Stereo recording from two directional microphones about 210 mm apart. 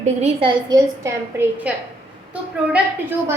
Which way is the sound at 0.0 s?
30° right (ahead or behind).